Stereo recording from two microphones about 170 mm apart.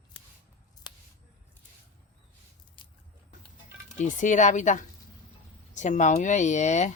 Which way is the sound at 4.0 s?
50° left (ahead or behind).